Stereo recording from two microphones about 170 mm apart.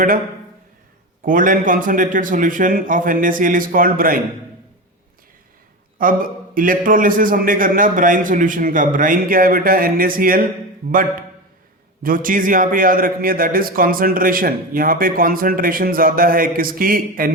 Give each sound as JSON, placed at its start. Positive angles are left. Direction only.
{"t": 1.2, "sound": "a man's voice", "side_deg": -55}
{"t": 6.0, "sound": "a man's voice", "side_deg": -55}
{"t": 12.0, "sound": "a man's voice", "side_deg": -55}